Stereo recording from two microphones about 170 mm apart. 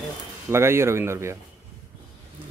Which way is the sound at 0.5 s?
15° right (ahead or behind).